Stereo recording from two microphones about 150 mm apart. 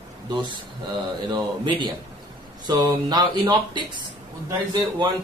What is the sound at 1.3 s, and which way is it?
Speech, 30° right (ahead or behind).